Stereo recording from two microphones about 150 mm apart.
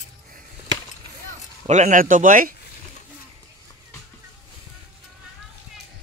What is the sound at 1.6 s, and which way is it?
Speech, 50° right (ahead or behind).